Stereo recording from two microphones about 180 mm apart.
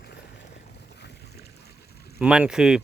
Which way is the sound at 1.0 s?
65° left (ahead or behind).